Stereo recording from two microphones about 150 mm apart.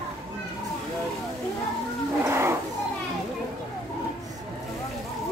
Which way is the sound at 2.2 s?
15° right (ahead or behind).